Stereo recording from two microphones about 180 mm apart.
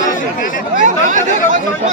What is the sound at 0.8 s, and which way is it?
Speech, 45° right (ahead or behind).